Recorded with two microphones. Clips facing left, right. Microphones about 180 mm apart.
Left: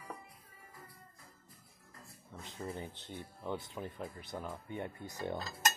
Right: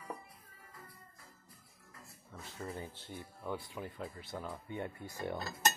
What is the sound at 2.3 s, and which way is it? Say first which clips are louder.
Speech: left 1 dB; 20° left (ahead or behind).